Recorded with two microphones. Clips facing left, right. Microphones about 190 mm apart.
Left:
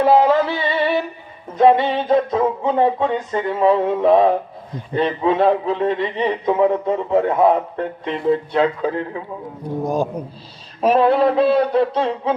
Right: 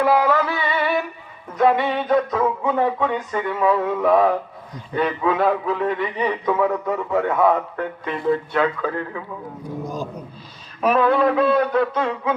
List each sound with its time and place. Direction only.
0.0 s music: 30° left (ahead or behind)
1.5 s a man's voice: 25° left (ahead or behind)
9.9 s a man's voice: 55° left (ahead or behind)
10.8 s a man's voice: 30° left (ahead or behind)